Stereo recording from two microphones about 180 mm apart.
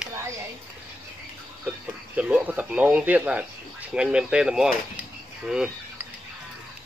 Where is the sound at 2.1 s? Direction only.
10° right (ahead or behind).